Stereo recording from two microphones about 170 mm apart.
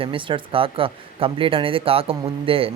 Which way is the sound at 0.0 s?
30° right (ahead or behind).